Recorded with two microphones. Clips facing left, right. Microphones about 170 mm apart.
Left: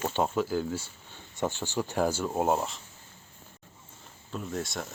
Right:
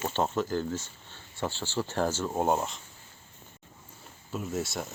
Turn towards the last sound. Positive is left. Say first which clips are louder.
# right 1 dB
turn(degrees=0)  # may be behind; listen again after turning